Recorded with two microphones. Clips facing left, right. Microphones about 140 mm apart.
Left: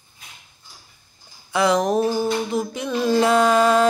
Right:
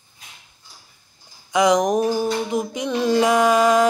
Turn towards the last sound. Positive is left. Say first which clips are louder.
# even
turn(degrees=-10)  # may be behind; listen again after turning